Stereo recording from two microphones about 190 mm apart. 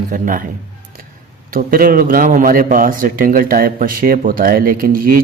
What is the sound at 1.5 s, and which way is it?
A man's voice, 50° right (ahead or behind).